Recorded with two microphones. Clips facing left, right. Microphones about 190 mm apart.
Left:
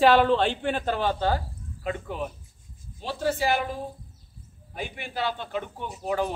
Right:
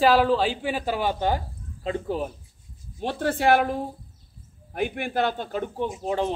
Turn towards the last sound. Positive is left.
turn(degrees=-30)  # may be behind; listen again after turning